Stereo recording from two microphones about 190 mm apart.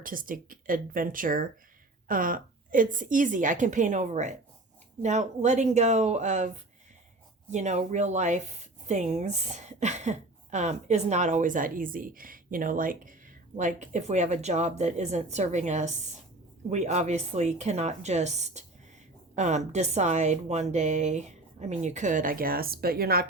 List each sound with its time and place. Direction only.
0.0 s a woman's voice: 45° right (ahead or behind)
7.5 s a woman's voice: 40° right (ahead or behind)